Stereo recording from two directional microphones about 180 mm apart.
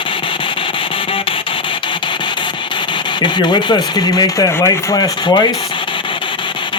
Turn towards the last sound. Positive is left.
turn(degrees=25)  # may be behind; listen again after turning